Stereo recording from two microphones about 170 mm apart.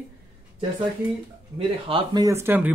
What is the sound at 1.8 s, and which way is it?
Speech, 25° right (ahead or behind).